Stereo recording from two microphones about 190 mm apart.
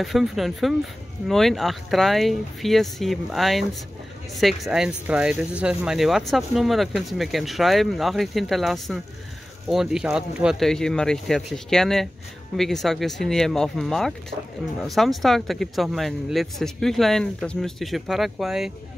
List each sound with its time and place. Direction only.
0.0 s speech: centre (ahead or behind)